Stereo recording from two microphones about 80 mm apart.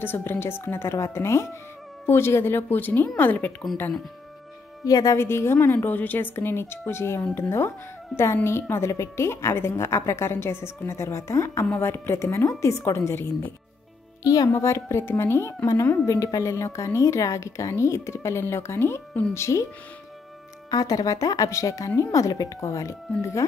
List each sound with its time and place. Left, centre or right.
0.0 s a woman's voice: left
4.8 s speech: left
5.2 s a woman's voice: left
14.2 s a woman's voice: left
16.1 s a woman's voice: left
20.7 s speech: left